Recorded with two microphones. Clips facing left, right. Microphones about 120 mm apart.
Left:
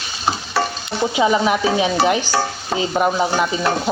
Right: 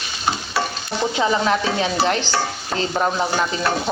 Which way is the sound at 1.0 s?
10° left (ahead or behind).